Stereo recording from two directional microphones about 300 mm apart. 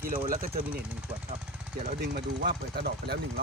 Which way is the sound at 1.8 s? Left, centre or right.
Right.